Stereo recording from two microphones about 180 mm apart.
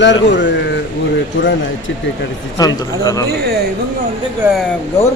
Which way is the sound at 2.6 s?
20° left (ahead or behind).